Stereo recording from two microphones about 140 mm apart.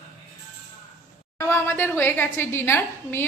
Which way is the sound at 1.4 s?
15° left (ahead or behind).